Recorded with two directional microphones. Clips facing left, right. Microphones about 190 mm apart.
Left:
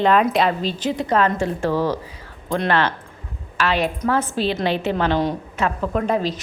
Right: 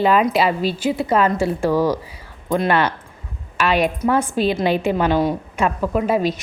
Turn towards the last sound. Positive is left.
turn(degrees=-10)  # may be behind; listen again after turning